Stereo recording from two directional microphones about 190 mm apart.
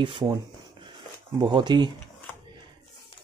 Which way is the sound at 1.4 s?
25° right (ahead or behind).